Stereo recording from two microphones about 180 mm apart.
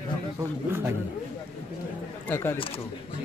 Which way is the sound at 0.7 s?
15° right (ahead or behind).